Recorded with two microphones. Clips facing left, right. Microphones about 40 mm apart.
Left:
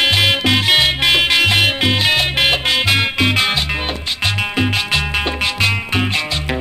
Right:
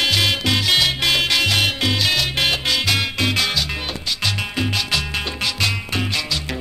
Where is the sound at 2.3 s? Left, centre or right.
Centre.